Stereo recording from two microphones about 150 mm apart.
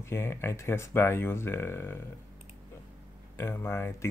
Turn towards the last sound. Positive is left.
turn(degrees=15)  # may be behind; listen again after turning